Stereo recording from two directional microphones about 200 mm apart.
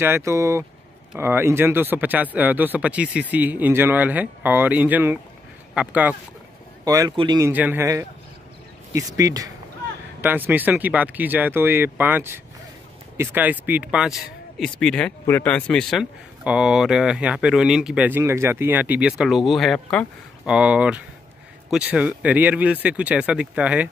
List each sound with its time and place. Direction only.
0.0 s speech: 15° right (ahead or behind)